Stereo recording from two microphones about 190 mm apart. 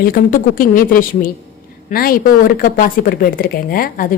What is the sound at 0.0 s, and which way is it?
Speech, 50° left (ahead or behind).